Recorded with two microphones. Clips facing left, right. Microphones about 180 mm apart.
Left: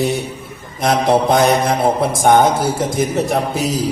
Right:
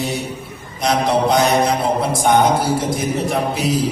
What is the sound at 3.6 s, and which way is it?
Speech, 40° left (ahead or behind).